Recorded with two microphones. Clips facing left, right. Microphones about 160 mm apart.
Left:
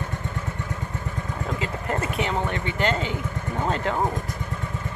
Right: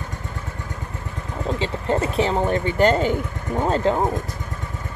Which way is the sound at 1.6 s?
30° right (ahead or behind).